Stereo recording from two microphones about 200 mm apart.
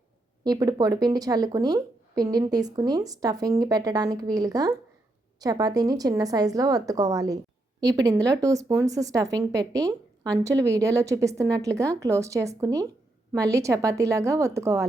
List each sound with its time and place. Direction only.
0.4 s speech: 20° right (ahead or behind)